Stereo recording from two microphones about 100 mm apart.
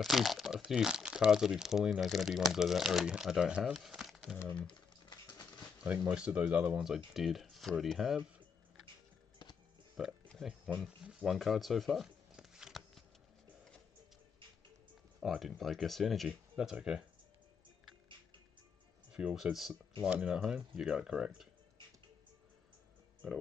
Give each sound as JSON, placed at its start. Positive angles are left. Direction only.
{"t": 0.0, "sound": "speech", "side_deg": 0}
{"t": 5.9, "sound": "speech", "side_deg": -15}
{"t": 10.0, "sound": "speech", "side_deg": -5}
{"t": 10.8, "sound": "tearing", "side_deg": -5}
{"t": 15.1, "sound": "speech", "side_deg": 0}
{"t": 19.1, "sound": "speech", "side_deg": -5}